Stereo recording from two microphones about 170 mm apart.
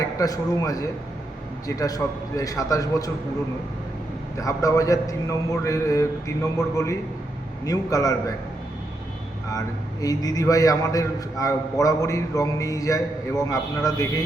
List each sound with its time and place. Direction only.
0.2 s a man's voice: 20° left (ahead or behind)
4.4 s a man's voice: 20° left (ahead or behind)
9.5 s a man's voice: 20° left (ahead or behind)